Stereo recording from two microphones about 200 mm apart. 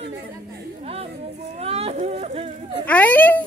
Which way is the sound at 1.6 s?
30° right (ahead or behind).